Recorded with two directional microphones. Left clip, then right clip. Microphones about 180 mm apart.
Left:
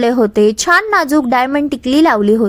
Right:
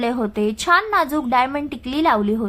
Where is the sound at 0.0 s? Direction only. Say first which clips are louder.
Left 10 dB; 35° left (ahead or behind).